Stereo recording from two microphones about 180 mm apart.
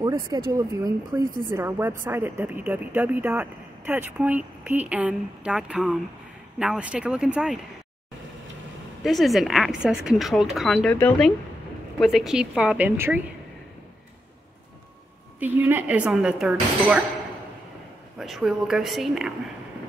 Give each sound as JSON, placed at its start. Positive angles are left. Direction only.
{"t": 0.0, "sound": "speech", "side_deg": -20}
{"t": 9.0, "sound": "speech", "side_deg": 0}
{"t": 15.3, "sound": "speech", "side_deg": -10}
{"t": 18.2, "sound": "speech", "side_deg": 0}